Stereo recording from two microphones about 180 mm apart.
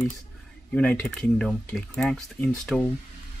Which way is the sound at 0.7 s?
5° left (ahead or behind).